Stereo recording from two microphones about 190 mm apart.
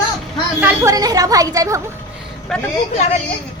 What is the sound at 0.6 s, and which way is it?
A woman's voice, 15° right (ahead or behind).